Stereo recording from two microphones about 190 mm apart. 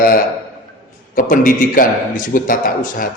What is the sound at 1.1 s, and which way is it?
A man's voice, 45° left (ahead or behind).